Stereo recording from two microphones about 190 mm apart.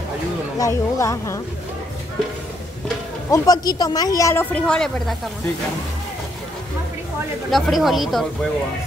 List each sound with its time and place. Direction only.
0.6 s speech: 15° left (ahead or behind)
3.3 s speech: 20° left (ahead or behind); by 5.1 s 5° left (ahead or behind)
7.5 s speech: centre (ahead or behind)